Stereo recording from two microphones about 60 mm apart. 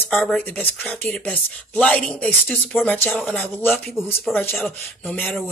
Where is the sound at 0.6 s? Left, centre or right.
Left.